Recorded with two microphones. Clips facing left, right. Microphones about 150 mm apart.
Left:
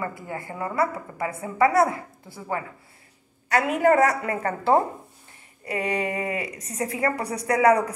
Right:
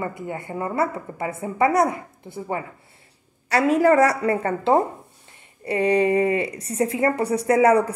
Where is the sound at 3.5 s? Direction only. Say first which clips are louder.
Right 3 dB; 35° right (ahead or behind).